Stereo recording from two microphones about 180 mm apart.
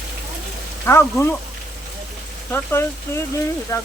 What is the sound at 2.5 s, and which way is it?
Speech, 15° left (ahead or behind).